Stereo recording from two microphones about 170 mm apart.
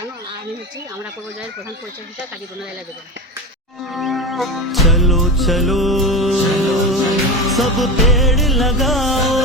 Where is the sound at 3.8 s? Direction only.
Centre (ahead or behind).